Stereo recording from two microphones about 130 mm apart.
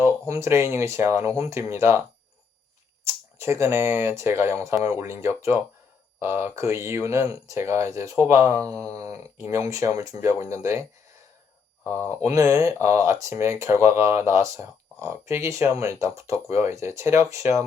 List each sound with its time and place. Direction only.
0.0 s speech: 20° right (ahead or behind)
11.9 s speech: 20° right (ahead or behind)